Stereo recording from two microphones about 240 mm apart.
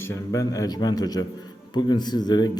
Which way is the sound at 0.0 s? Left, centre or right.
Centre.